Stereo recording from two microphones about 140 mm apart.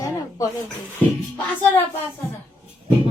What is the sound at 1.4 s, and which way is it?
Music, 15° left (ahead or behind).